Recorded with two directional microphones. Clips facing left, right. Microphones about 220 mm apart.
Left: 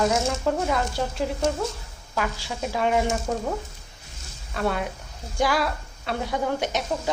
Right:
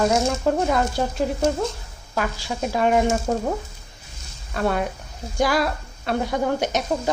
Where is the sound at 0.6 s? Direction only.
45° right (ahead or behind).